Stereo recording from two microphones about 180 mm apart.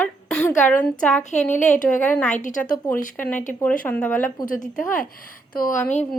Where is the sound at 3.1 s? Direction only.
10° left (ahead or behind).